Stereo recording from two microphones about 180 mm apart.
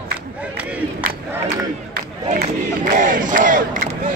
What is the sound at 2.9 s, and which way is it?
Crowd, 45° right (ahead or behind).